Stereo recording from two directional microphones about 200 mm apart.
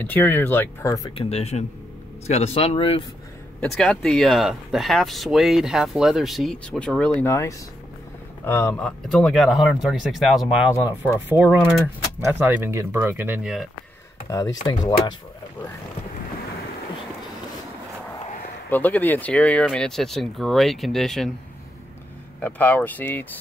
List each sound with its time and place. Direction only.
0.0 s speech: 10° left (ahead or behind)
1.1 s speech: 30° left (ahead or behind)
3.7 s speech: 5° left (ahead or behind)
14.3 s speech: 15° left (ahead or behind)
18.7 s speech: 10° left (ahead or behind)
22.4 s speech: 10° left (ahead or behind)